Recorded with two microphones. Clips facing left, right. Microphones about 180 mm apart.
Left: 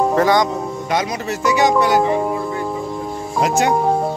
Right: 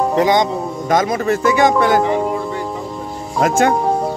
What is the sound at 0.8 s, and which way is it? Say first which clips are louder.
Speech: right 7 dB; 50° right (ahead or behind).